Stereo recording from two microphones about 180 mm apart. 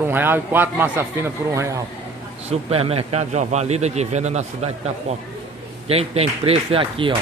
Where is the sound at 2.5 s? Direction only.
35° right (ahead or behind).